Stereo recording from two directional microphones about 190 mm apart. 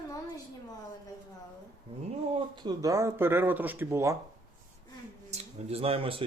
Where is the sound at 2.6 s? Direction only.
15° right (ahead or behind).